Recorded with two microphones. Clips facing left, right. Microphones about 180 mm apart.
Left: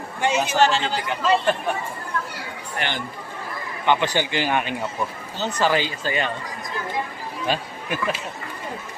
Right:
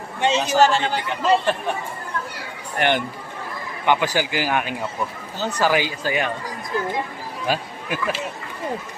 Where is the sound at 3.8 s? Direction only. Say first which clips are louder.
Right 1 dB; 10° right (ahead or behind).